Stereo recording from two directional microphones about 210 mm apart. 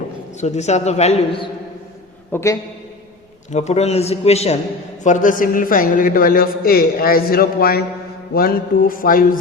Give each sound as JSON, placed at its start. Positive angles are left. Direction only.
{"t": 0.3, "sound": "a man's voice", "side_deg": 30}
{"t": 2.3, "sound": "a man's voice", "side_deg": 15}
{"t": 3.5, "sound": "a man's voice", "side_deg": 30}